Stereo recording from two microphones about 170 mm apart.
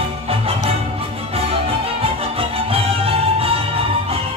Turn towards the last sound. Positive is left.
turn(degrees=-35)  # may be behind; listen again after turning